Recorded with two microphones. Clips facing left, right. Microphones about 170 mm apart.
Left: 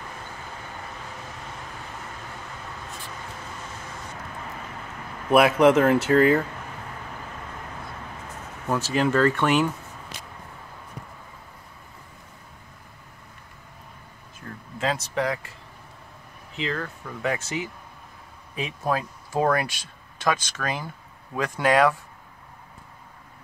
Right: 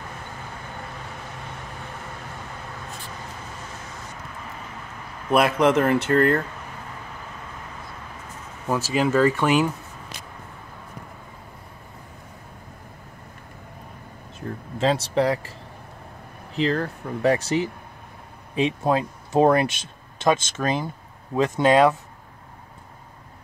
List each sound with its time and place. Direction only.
5.3 s speech: centre (ahead or behind)
8.6 s speech: 5° right (ahead or behind)
14.4 s a sound: 25° right (ahead or behind)
14.8 s speech: 30° right (ahead or behind)
16.5 s speech: 35° right (ahead or behind)